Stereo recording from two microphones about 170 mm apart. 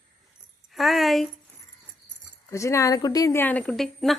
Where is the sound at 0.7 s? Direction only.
Centre (ahead or behind).